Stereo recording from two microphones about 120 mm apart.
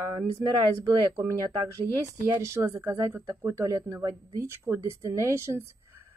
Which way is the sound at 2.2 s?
25° right (ahead or behind).